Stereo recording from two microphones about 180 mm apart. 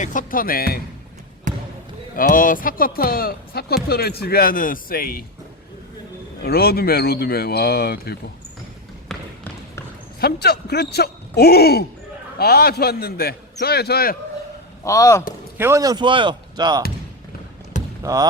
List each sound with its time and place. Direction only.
0.0 s speech: 45° left (ahead or behind)
1.5 s basketball bounce: 45° right (ahead or behind)
2.1 s speech: 50° left (ahead or behind)
6.4 s speech: 60° left (ahead or behind)
9.0 s trickle: 10° left (ahead or behind)
10.2 s a man's voice: 60° left (ahead or behind)
14.8 s a man's voice: 15° left (ahead or behind)
15.5 s speech: 15° right (ahead or behind)
18.0 s speech: 20° right (ahead or behind)